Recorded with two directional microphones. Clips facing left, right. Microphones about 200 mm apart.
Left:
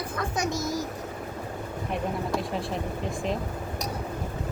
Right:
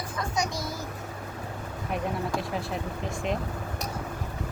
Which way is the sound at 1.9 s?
Centre (ahead or behind).